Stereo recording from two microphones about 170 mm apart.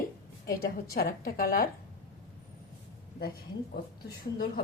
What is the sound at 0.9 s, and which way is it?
Speech, 60° left (ahead or behind).